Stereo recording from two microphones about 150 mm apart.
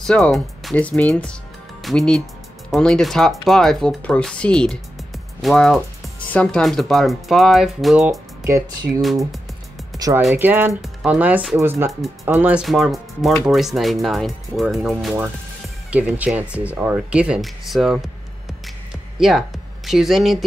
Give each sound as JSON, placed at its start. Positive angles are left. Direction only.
{"t": 0.0, "sound": "speech", "side_deg": 5}
{"t": 8.5, "sound": "speech", "side_deg": -20}
{"t": 10.3, "sound": "speech", "side_deg": -15}
{"t": 12.6, "sound": "speech", "side_deg": 0}
{"t": 19.1, "sound": "speech", "side_deg": 0}